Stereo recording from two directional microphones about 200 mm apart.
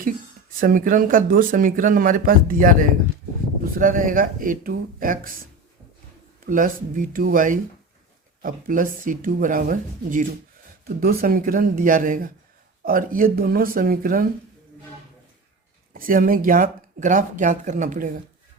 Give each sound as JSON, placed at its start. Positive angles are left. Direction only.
{"t": 0.6, "sound": "speech", "side_deg": -45}
{"t": 6.4, "sound": "speech", "side_deg": -45}
{"t": 15.9, "sound": "speech", "side_deg": -45}